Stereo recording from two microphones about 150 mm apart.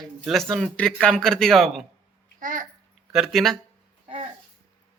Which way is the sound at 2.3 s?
60° right (ahead or behind).